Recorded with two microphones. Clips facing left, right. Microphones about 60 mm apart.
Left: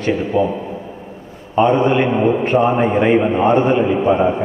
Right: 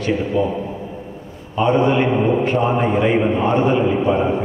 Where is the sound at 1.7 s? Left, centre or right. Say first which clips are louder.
Left 1 dB; left.